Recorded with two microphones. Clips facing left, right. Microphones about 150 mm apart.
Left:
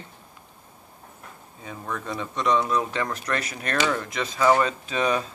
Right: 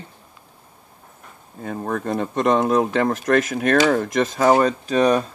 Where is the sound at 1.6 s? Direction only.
55° right (ahead or behind).